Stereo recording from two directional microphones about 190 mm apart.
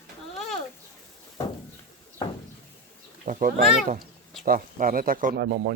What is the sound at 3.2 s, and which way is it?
Speech, 45° right (ahead or behind).